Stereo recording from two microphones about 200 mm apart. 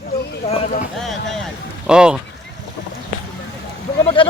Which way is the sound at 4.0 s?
25° left (ahead or behind).